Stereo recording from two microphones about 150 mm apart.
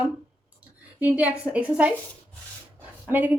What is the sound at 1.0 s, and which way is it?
Speech, 10° right (ahead or behind).